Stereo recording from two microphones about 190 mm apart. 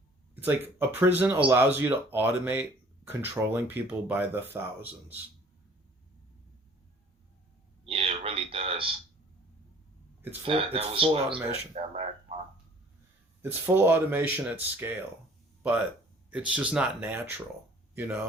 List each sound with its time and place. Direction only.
0.3 s speech: 10° right (ahead or behind)
7.9 s a sound: 30° right (ahead or behind)
10.4 s speech: 30° right (ahead or behind)
11.7 s a sound: 35° right (ahead or behind)
13.4 s speech: 10° right (ahead or behind)
16.3 s speech: 5° right (ahead or behind)